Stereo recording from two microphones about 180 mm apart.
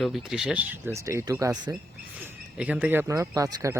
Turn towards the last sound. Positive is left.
turn(degrees=-20)  # may be behind; listen again after turning